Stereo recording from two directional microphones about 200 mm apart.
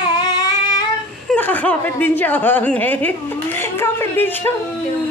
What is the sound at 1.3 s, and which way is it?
Speech, 5° left (ahead or behind).